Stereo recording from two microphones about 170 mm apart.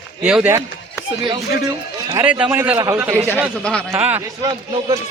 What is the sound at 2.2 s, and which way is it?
Speech, 10° right (ahead or behind).